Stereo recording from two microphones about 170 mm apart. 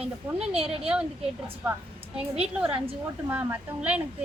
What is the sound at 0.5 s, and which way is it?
Speech, 35° right (ahead or behind).